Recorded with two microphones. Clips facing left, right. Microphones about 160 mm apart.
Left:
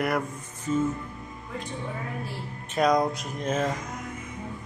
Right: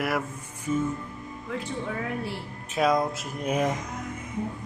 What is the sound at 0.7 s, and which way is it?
Music, 10° right (ahead or behind).